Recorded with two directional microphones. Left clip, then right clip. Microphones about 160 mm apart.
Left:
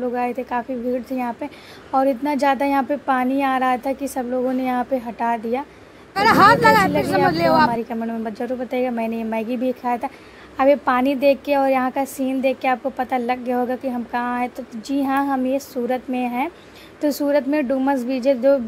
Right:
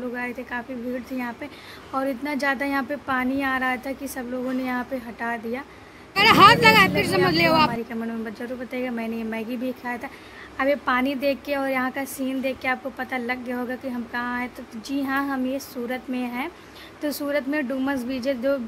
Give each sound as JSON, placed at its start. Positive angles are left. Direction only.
{"t": 0.1, "sound": "a woman's voice", "side_deg": 30}
{"t": 6.1, "sound": "speech", "side_deg": 0}
{"t": 7.7, "sound": "a woman's voice", "side_deg": 25}